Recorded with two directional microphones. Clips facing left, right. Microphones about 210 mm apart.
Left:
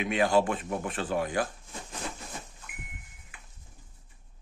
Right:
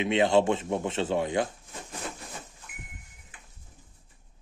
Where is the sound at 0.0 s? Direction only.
25° right (ahead or behind).